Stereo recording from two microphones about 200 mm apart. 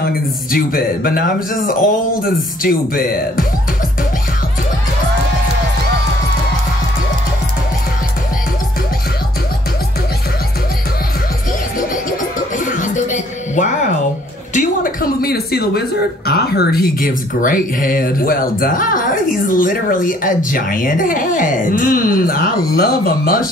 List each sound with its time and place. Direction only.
0.5 s speech: 45° left (ahead or behind)
12.5 s music: 40° left (ahead or behind)
14.5 s a sound: 40° left (ahead or behind)
16.3 s speech: 50° left (ahead or behind)